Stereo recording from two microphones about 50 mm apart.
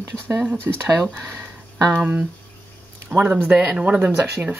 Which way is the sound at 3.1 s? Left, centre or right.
Right.